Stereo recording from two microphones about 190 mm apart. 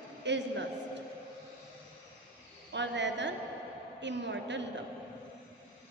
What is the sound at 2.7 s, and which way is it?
A woman's voice, 70° right (ahead or behind).